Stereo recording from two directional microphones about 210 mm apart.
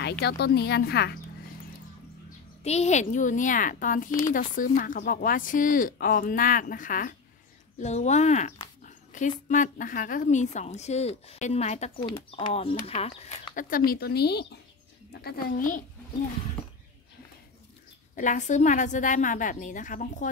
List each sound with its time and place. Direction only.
0.2 s a woman's voice: 50° left (ahead or behind)
2.6 s speech: 30° left (ahead or behind)
13.6 s a woman's voice: 40° left (ahead or behind)
18.1 s speech: 35° left (ahead or behind)